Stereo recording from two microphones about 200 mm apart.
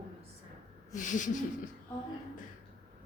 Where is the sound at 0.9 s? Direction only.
40° left (ahead or behind).